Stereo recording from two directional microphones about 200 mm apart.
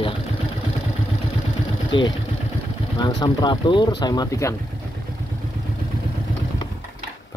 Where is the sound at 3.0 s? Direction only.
20° left (ahead or behind).